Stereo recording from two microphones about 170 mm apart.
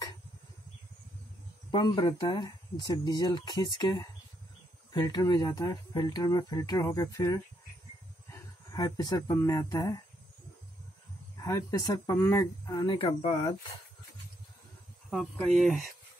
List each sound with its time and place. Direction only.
1.7 s speech: 25° left (ahead or behind)
11.4 s speech: 20° left (ahead or behind); by 13.5 s 35° left (ahead or behind)
15.0 s speech: centre (ahead or behind)